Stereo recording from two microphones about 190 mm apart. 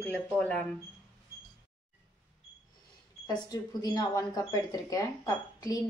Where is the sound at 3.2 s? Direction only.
20° left (ahead or behind).